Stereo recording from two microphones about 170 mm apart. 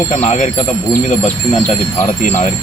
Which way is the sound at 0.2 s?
45° left (ahead or behind).